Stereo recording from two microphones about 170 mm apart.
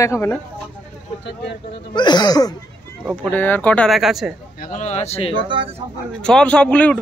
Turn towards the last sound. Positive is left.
turn(degrees=5)  # may be behind; listen again after turning